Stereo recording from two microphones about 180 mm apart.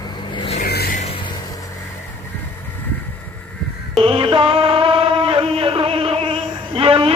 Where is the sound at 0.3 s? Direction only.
30° left (ahead or behind).